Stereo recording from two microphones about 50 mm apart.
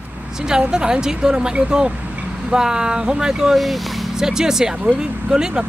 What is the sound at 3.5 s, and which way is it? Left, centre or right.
Speech, centre.